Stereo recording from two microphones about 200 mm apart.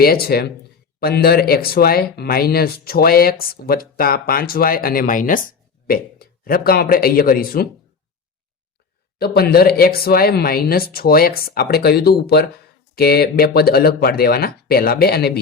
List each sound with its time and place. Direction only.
0.0 s speech: 50° left (ahead or behind)
9.1 s speech: 50° left (ahead or behind)